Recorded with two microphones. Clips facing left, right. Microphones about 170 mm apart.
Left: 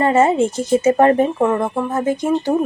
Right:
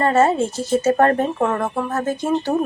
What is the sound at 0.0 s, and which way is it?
A woman's voice, 15° left (ahead or behind).